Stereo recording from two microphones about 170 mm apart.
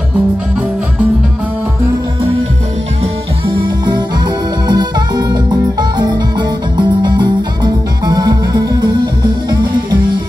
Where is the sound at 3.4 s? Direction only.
30° right (ahead or behind).